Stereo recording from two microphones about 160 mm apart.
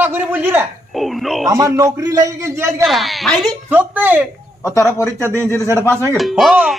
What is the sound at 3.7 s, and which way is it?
Speech, 10° right (ahead or behind).